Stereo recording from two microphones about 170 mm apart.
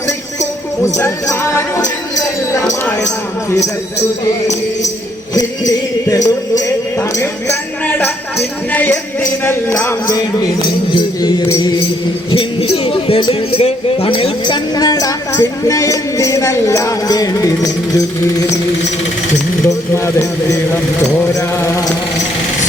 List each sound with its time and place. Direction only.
0.9 s speech: 15° left (ahead or behind)
5.3 s speech: 20° left (ahead or behind)
7.2 s music: 15° left (ahead or behind)
8.7 s speech: 10° left (ahead or behind)
12.3 s speech: 35° left (ahead or behind)
19.6 s speech: 15° left (ahead or behind)